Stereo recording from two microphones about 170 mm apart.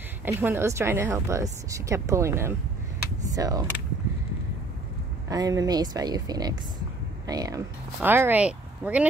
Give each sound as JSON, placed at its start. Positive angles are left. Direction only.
{"t": 0.2, "sound": "speech", "side_deg": -10}
{"t": 5.3, "sound": "speech", "side_deg": -20}